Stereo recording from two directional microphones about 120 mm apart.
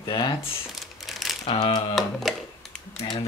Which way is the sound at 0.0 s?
40° left (ahead or behind).